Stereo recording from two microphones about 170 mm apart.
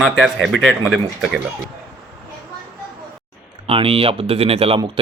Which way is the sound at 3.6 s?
35° right (ahead or behind).